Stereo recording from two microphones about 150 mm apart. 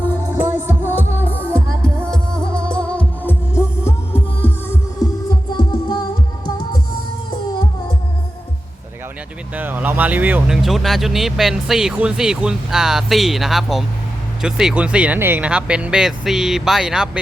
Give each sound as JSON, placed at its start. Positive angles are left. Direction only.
{"t": 0.3, "sound": "music", "side_deg": -15}
{"t": 1.2, "sound": "music", "side_deg": 10}
{"t": 5.5, "sound": "music", "side_deg": 30}
{"t": 9.6, "sound": "speech", "side_deg": -10}